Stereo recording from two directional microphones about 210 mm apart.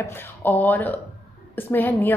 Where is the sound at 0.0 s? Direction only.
10° left (ahead or behind).